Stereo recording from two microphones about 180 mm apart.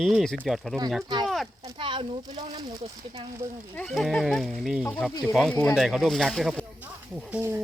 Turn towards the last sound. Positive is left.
turn(degrees=-10)  # may be behind; listen again after turning